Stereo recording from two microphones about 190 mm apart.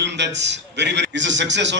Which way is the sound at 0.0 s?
65° right (ahead or behind).